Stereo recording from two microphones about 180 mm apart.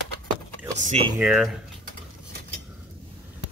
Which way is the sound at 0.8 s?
40° right (ahead or behind).